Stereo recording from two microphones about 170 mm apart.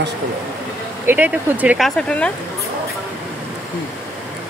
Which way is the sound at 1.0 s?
10° right (ahead or behind).